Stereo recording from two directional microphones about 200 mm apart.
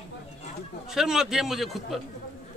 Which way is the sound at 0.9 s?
Centre (ahead or behind).